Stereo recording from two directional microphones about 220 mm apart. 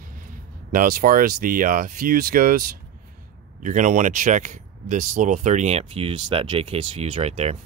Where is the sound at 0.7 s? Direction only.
40° right (ahead or behind).